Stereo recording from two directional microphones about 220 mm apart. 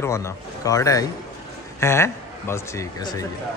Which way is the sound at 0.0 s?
15° left (ahead or behind).